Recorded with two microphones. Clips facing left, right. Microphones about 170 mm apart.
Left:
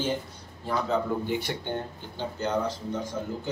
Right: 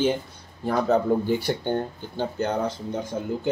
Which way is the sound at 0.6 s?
50° right (ahead or behind).